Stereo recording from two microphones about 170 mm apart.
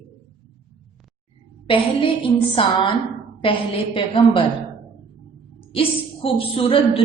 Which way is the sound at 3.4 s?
30° left (ahead or behind).